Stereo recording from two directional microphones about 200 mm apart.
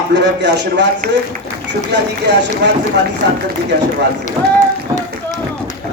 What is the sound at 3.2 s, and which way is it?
Speech, 55° right (ahead or behind).